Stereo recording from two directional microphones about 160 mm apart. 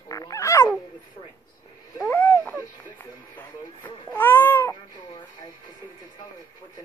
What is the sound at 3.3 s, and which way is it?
Baby cry, 10° left (ahead or behind).